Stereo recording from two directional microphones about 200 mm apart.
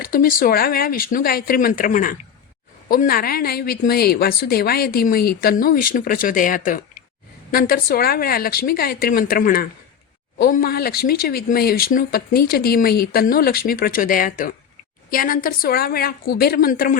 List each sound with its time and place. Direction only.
0.0 s speech: 45° left (ahead or behind)